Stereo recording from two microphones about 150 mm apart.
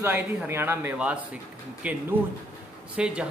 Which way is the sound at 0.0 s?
15° right (ahead or behind).